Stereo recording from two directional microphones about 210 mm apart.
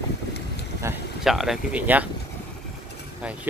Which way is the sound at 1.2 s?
Centre (ahead or behind).